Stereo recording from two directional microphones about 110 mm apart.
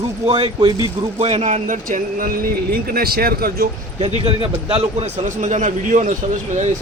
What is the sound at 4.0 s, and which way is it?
Speech, 75° right (ahead or behind).